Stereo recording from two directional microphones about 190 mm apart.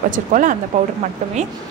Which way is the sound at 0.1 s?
45° right (ahead or behind).